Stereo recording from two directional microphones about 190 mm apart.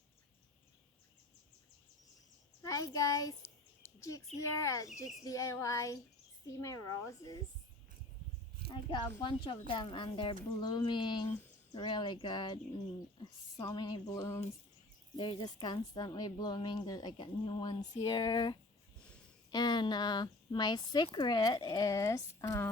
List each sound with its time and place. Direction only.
2.6 s a sound: 15° left (ahead or behind)
4.5 s a woman's voice: 15° left (ahead or behind)
8.7 s speech: 25° left (ahead or behind)